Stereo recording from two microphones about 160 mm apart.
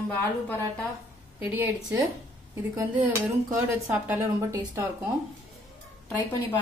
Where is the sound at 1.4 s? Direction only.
15° right (ahead or behind).